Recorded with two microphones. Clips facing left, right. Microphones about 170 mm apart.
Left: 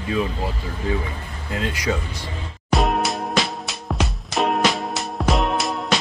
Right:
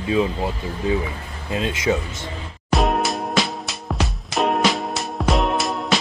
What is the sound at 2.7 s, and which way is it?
Music, centre (ahead or behind).